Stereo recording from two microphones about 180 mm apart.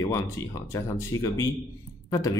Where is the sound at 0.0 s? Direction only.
20° left (ahead or behind).